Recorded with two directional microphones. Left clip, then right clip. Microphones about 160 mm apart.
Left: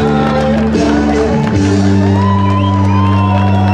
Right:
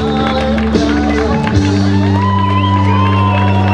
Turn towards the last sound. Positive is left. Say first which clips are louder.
# even
turn(degrees=10)  # may be behind; listen again after turning